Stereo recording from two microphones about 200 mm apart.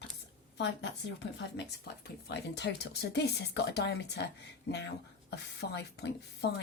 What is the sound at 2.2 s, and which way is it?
Speech, 55° left (ahead or behind).